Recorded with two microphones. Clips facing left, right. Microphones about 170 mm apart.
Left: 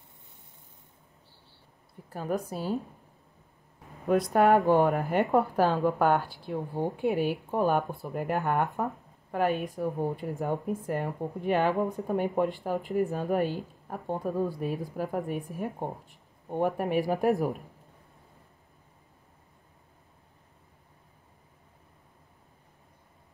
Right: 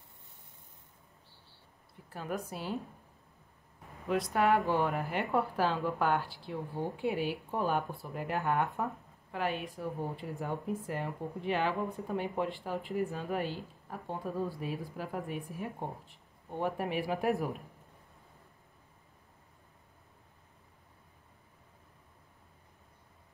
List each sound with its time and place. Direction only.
2.0 s speech: 40° left (ahead or behind)
4.3 s speech: 40° left (ahead or behind)